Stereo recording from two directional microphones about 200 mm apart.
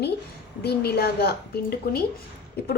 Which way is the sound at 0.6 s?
50° left (ahead or behind).